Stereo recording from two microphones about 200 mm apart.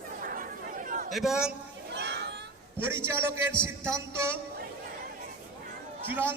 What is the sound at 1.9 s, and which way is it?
Children playing, 55° right (ahead or behind).